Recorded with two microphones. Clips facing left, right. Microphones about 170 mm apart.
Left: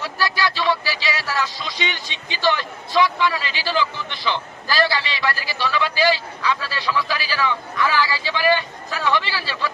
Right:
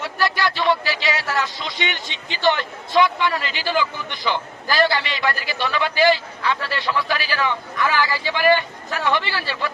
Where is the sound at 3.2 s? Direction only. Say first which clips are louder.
Left 1 dB; 50° right (ahead or behind).